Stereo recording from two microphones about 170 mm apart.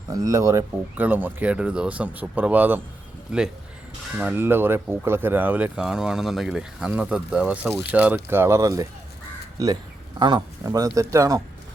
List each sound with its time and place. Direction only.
0.1 s speech: 20° right (ahead or behind)